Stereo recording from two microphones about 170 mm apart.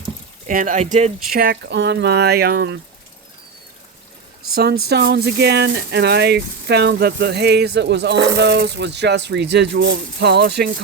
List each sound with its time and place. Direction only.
0.4 s speech: 50° right (ahead or behind)
1.3 s speech: 60° right (ahead or behind); by 2.8 s 80° right
4.5 s speech: 70° right (ahead or behind)